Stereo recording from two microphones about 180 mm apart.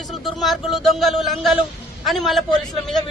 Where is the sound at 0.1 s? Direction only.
Centre (ahead or behind).